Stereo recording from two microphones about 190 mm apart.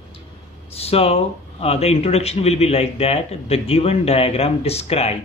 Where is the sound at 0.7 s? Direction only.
30° left (ahead or behind).